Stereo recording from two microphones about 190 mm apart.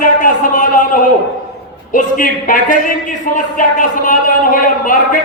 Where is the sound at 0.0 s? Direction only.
45° left (ahead or behind).